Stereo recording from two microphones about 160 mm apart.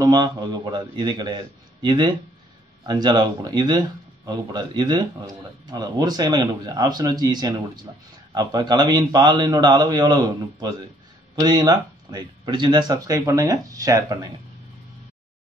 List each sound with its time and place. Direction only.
0.0 s speech: 25° right (ahead or behind)